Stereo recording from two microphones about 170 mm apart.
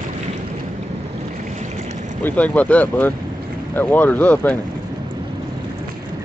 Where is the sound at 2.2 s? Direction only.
10° left (ahead or behind).